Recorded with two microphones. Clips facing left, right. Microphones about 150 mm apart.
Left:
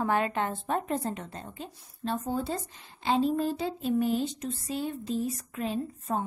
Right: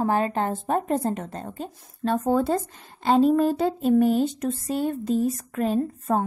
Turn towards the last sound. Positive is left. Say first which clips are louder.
# right 8 dB
turn(degrees=-55)  # may be behind; listen again after turning